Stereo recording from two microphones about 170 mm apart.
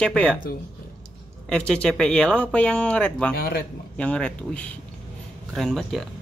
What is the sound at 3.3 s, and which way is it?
Speech, 60° left (ahead or behind).